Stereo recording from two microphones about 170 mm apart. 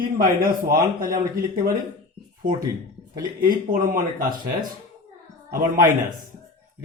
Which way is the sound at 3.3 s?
55° right (ahead or behind).